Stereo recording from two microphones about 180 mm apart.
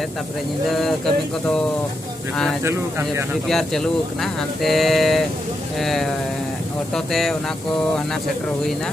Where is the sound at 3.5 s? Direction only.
Centre (ahead or behind).